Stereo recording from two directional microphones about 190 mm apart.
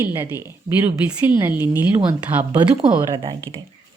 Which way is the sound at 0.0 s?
15° right (ahead or behind).